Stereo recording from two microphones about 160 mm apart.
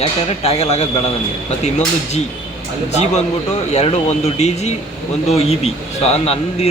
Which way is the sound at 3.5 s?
45° left (ahead or behind).